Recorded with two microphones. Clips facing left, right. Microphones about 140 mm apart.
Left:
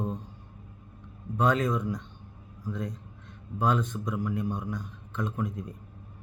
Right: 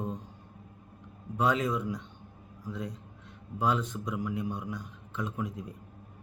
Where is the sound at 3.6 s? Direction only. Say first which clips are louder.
Left 2 dB; 10° right (ahead or behind).